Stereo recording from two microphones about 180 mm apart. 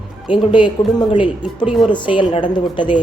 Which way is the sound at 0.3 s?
25° left (ahead or behind).